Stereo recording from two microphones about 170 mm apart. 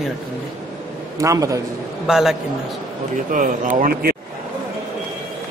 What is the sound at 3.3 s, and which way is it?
Speech, 50° right (ahead or behind).